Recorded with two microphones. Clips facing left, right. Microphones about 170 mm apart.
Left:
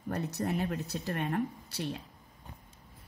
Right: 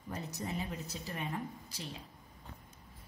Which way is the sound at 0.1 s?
65° left (ahead or behind).